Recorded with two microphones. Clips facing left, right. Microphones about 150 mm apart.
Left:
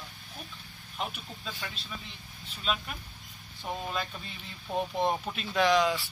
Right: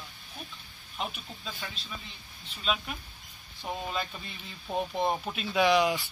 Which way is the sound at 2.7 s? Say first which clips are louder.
Right 1 dB; centre (ahead or behind).